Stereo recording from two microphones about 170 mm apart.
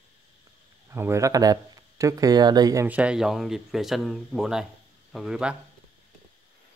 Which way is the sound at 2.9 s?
5° right (ahead or behind).